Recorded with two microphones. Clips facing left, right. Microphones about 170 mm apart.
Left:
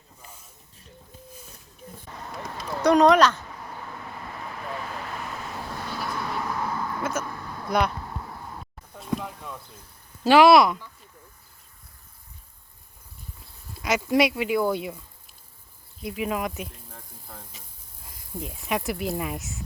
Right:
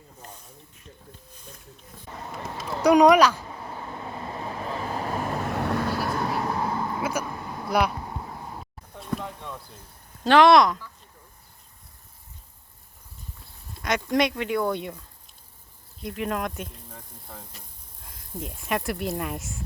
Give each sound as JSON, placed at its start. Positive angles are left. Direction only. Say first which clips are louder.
{"t": 2.4, "sound": "run", "louder": "right 1 dB", "side_deg": -10}
{"t": 3.5, "sound": "vehicle", "louder": "right 2 dB", "side_deg": -25}
{"t": 5.5, "sound": "vehicle", "louder": "right 8 dB", "side_deg": -65}
{"t": 7.0, "sound": "vehicle", "louder": "right 1 dB", "side_deg": -10}
{"t": 7.7, "sound": "speech", "louder": "even", "side_deg": -5}
{"t": 9.0, "sound": "a sound", "louder": "left 1 dB", "side_deg": 5}
{"t": 10.2, "sound": "speech", "louder": "left 1 dB", "side_deg": 5}
{"t": 13.7, "sound": "speech", "louder": "left 2 dB", "side_deg": 5}